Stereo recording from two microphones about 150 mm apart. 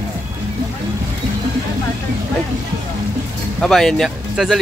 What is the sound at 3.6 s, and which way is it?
Speech, 5° left (ahead or behind).